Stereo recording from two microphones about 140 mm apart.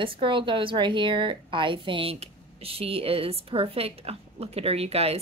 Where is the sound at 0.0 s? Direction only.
40° right (ahead or behind).